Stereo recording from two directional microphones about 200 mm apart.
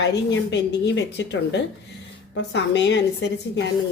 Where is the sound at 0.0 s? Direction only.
60° left (ahead or behind).